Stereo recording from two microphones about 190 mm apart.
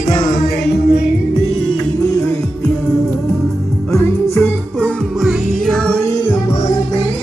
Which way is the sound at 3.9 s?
10° left (ahead or behind).